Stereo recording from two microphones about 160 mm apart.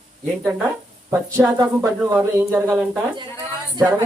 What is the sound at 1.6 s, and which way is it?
Speech, 15° right (ahead or behind).